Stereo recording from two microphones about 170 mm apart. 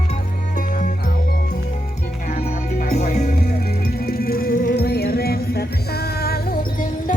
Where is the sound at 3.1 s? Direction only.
45° left (ahead or behind).